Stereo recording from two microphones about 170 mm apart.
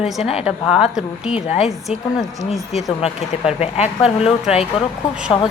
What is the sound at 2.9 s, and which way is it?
Speech, 35° left (ahead or behind).